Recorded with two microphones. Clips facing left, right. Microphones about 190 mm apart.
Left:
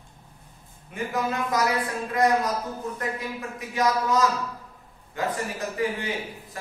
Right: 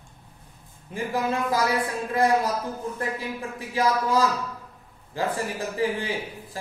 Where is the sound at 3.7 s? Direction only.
30° right (ahead or behind).